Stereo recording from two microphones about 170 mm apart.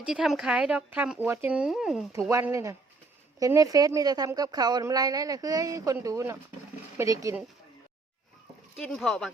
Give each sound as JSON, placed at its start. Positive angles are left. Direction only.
{"t": 0.1, "sound": "speech", "side_deg": -5}
{"t": 2.3, "sound": "a woman's voice", "side_deg": -15}
{"t": 8.8, "sound": "speech", "side_deg": 0}